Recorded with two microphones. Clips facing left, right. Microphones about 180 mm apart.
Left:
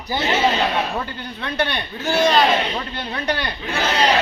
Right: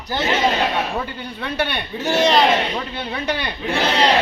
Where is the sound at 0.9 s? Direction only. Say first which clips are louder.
Right 1 dB; 10° right (ahead or behind).